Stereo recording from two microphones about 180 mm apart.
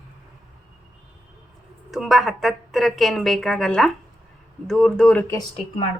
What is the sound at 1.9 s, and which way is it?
Speech, centre (ahead or behind).